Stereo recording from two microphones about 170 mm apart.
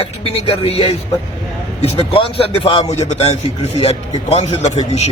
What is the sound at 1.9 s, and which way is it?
A man's voice, 35° left (ahead or behind).